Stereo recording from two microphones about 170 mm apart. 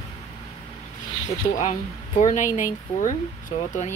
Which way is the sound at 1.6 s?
45° left (ahead or behind).